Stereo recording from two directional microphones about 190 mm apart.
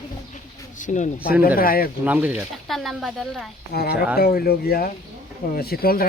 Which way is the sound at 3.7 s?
55° left (ahead or behind).